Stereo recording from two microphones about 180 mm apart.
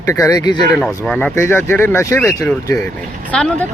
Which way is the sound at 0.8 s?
5° left (ahead or behind).